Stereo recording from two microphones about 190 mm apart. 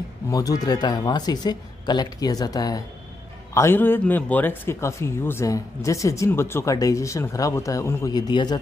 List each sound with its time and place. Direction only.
0.3 s a man's voice: 20° left (ahead or behind)